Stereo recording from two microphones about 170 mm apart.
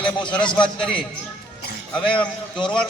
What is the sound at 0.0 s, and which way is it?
Speech, 25° left (ahead or behind).